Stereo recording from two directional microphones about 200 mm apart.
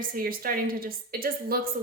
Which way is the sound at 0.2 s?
45° right (ahead or behind).